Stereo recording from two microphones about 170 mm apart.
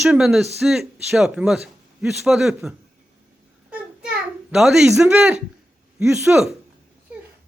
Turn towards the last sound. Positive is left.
turn(degrees=-5)  # may be behind; listen again after turning